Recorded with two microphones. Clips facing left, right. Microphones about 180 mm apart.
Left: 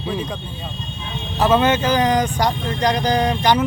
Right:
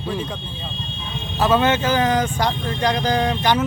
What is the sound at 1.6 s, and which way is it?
Speech, 15° left (ahead or behind).